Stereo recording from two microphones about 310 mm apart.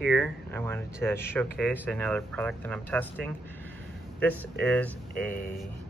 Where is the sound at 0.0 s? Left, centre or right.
Centre.